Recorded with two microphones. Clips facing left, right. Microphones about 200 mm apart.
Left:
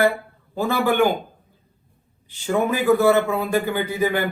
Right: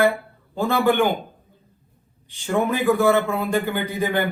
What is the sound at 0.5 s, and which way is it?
Speech, 10° left (ahead or behind).